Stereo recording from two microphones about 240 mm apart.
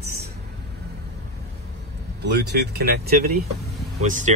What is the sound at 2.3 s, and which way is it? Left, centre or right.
Speech, right.